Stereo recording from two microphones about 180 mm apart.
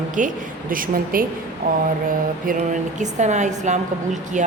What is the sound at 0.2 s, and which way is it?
A woman's voice, 45° right (ahead or behind).